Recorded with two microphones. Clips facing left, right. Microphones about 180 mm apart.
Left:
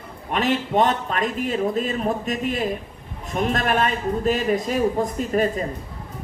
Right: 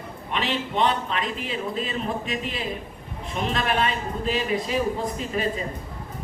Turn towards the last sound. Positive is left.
turn(degrees=45)  # may be behind; listen again after turning